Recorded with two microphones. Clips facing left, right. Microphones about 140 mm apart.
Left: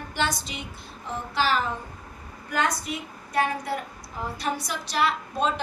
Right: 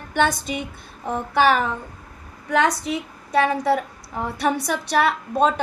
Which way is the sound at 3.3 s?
85° right.